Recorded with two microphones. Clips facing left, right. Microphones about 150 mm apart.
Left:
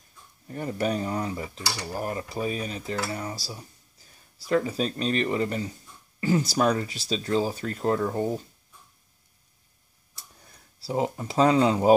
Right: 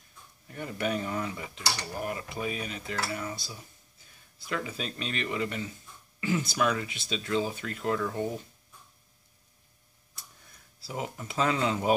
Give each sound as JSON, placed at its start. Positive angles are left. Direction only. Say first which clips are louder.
{"t": 0.5, "sound": "dishes", "louder": "left 4 dB", "side_deg": 40}
{"t": 10.1, "sound": "speech", "louder": "left 2 dB", "side_deg": 35}